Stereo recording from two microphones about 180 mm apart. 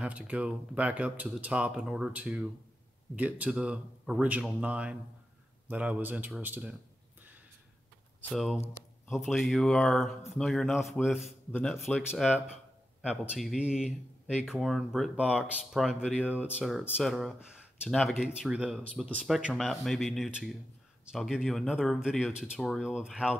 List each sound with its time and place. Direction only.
0.0 s speech: 5° right (ahead or behind)
8.2 s speech: 5° left (ahead or behind)
13.0 s speech: 5° right (ahead or behind)